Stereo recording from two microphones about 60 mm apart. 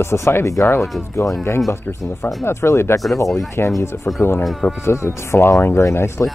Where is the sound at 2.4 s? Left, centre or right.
Left.